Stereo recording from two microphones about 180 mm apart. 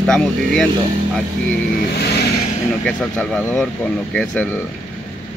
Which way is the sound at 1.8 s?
65° left (ahead or behind).